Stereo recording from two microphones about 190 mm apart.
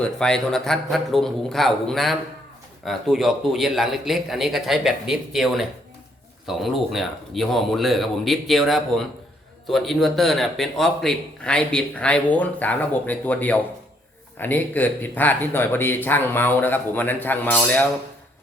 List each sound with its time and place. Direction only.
0.0 s a man's voice: 5° left (ahead or behind)